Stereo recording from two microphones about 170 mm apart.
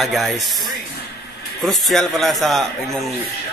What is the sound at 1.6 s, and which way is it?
Speech, centre (ahead or behind).